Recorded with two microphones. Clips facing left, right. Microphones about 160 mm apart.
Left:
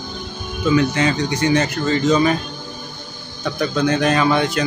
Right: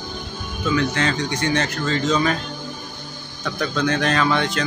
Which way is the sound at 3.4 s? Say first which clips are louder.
Left 3 dB; 10° left (ahead or behind).